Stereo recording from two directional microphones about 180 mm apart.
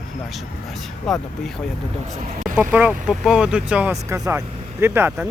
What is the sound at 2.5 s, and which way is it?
Speech, 10° right (ahead or behind).